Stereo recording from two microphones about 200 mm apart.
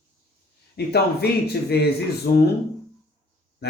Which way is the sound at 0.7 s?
55° left (ahead or behind).